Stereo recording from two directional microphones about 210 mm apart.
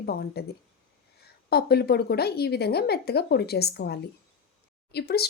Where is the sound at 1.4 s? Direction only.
50° left (ahead or behind).